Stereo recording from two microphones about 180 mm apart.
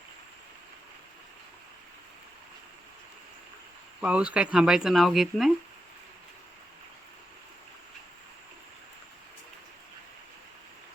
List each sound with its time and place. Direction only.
4.0 s speech: 5° right (ahead or behind)